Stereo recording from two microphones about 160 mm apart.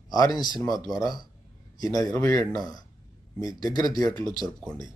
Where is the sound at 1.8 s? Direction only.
20° left (ahead or behind).